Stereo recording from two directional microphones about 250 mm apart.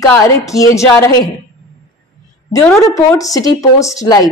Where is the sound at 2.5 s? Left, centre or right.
Centre.